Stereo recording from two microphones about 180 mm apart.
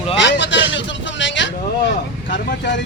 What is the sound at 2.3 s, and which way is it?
Speech, 75° left (ahead or behind).